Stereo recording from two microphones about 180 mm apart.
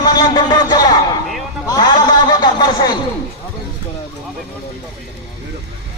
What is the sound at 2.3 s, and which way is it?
Speech, 25° left (ahead or behind).